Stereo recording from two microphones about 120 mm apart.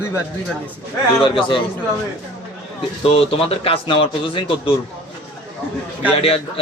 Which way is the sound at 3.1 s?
50° left (ahead or behind).